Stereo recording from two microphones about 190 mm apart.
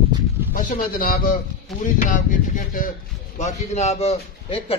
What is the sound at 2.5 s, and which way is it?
A man's voice, 45° left (ahead or behind).